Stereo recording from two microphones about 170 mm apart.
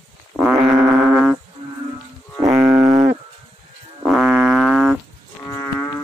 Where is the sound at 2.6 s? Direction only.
10° right (ahead or behind).